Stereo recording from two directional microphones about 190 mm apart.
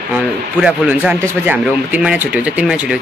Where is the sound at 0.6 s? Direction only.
5° right (ahead or behind).